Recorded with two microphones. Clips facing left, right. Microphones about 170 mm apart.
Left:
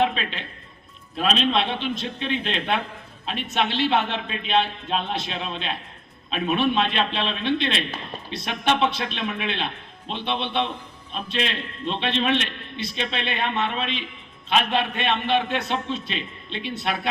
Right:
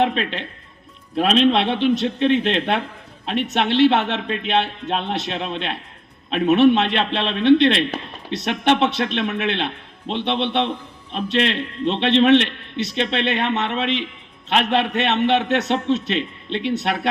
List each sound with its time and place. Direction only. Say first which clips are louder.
0.0 s a man's voice: right 3 dB; 65° right (ahead or behind)